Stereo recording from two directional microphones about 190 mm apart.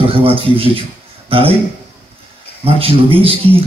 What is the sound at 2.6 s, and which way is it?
Speech, 30° right (ahead or behind).